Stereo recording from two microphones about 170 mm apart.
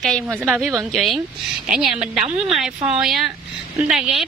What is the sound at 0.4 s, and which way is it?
A woman's voice, 5° left (ahead or behind).